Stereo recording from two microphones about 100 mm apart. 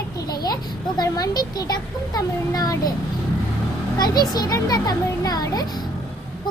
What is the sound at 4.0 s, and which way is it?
A child's voice, 40° left (ahead or behind).